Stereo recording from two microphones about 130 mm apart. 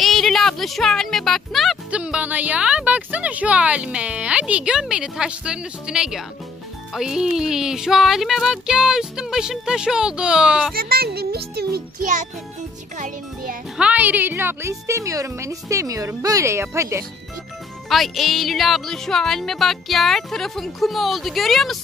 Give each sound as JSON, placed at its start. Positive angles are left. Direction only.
{"t": 0.0, "sound": "speech", "side_deg": 0}
{"t": 12.9, "sound": "music", "side_deg": -80}
{"t": 13.7, "sound": "a woman's voice", "side_deg": -10}
{"t": 17.8, "sound": "speech", "side_deg": 0}